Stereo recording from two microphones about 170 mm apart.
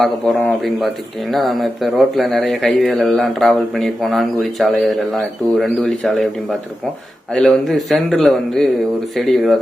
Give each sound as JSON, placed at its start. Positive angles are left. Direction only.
{"t": 0.0, "sound": "a man's voice", "side_deg": 0}